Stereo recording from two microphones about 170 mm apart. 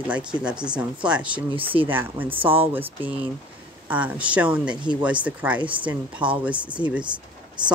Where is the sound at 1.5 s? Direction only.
30° right (ahead or behind).